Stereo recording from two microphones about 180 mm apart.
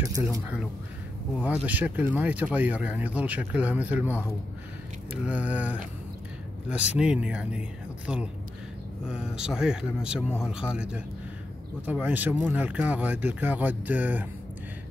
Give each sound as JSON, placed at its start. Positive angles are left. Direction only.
{"t": 0.0, "sound": "speech", "side_deg": -20}
{"t": 1.4, "sound": "speech", "side_deg": -10}